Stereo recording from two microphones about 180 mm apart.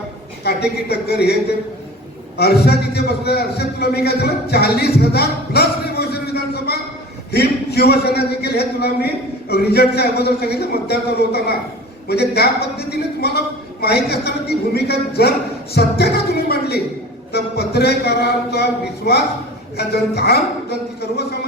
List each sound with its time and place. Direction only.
0.4 s a man's voice: 65° left (ahead or behind)
2.4 s a man's voice: 65° left (ahead or behind)